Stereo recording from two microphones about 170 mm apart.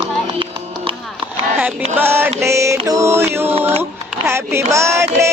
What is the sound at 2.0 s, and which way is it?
Mantra, 10° right (ahead or behind).